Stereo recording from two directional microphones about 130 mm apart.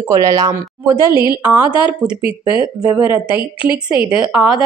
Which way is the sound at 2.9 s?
15° right (ahead or behind).